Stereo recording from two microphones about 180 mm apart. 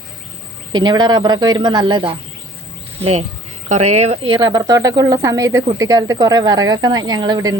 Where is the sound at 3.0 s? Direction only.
35° right (ahead or behind).